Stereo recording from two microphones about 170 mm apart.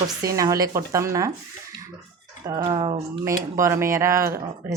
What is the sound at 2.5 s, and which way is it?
Speech, 25° right (ahead or behind).